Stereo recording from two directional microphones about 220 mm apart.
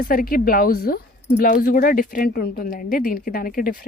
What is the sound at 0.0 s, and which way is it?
Speech, 40° left (ahead or behind).